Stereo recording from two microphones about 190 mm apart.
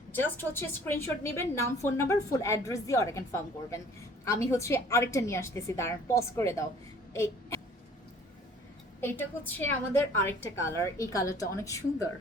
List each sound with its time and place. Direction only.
0.1 s a woman's voice: 10° left (ahead or behind)
7.1 s a sound: 15° left (ahead or behind)
9.0 s a woman's voice: 10° left (ahead or behind)